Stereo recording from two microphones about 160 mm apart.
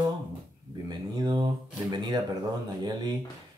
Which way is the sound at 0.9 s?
25° right (ahead or behind).